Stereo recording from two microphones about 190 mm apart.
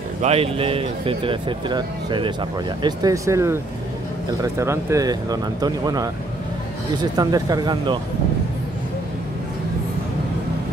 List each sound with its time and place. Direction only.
0.2 s speech: 30° right (ahead or behind)